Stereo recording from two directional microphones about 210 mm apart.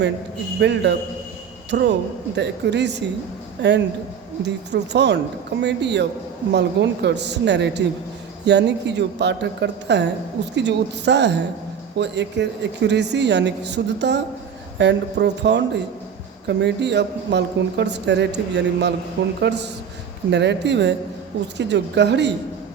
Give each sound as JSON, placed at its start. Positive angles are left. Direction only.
{"t": 0.6, "sound": "a woman's voice", "side_deg": -55}